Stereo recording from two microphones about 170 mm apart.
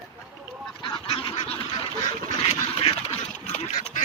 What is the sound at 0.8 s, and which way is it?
Goose, 30° left (ahead or behind).